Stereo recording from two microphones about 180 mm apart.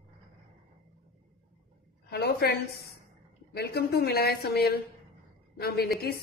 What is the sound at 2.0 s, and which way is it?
Speech, 65° left (ahead or behind).